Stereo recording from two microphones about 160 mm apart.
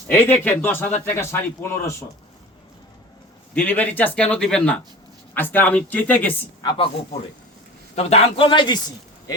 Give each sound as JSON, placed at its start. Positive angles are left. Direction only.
{"t": 0.1, "sound": "speech", "side_deg": 15}
{"t": 3.5, "sound": "speech", "side_deg": 10}
{"t": 6.6, "sound": "a man's voice", "side_deg": 30}